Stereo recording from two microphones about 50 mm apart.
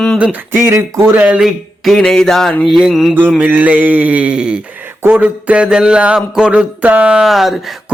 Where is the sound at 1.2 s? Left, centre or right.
Right.